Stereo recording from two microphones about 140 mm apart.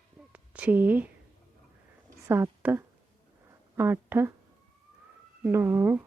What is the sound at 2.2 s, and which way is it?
Speech, 20° right (ahead or behind).